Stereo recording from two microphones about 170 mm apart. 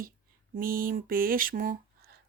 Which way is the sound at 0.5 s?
55° right (ahead or behind).